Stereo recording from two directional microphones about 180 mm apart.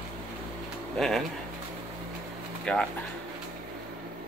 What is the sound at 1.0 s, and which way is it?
Speech, centre (ahead or behind).